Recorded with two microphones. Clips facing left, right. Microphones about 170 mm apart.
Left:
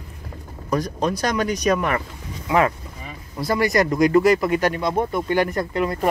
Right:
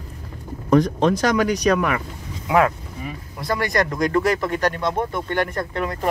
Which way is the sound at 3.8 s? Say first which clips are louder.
Left 4 dB; 15° left (ahead or behind).